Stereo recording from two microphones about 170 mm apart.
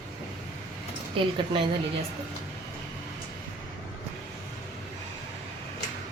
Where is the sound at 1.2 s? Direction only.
30° right (ahead or behind).